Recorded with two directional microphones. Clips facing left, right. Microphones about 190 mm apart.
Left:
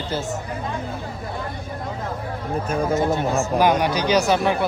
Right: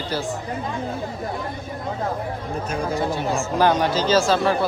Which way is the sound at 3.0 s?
20° left (ahead or behind).